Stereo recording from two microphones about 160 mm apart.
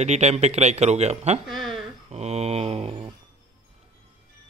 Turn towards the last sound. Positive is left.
turn(degrees=-40)  # may be behind; listen again after turning